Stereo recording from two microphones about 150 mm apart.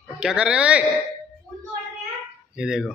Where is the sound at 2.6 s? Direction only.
5° right (ahead or behind).